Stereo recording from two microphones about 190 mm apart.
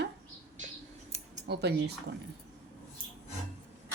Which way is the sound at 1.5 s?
60° right (ahead or behind).